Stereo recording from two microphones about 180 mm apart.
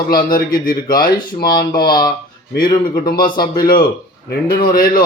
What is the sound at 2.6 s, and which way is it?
Speech, 25° left (ahead or behind).